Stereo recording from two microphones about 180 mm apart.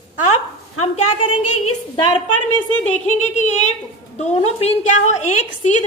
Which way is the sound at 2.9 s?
40° left (ahead or behind).